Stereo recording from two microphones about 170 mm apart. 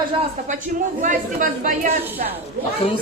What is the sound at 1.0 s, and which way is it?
Speech, 50° right (ahead or behind).